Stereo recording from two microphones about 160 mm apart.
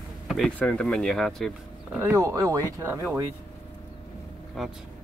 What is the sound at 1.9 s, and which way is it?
Speech, 20° right (ahead or behind).